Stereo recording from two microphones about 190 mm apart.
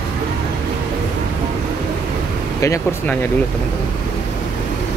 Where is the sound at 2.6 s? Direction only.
15° left (ahead or behind).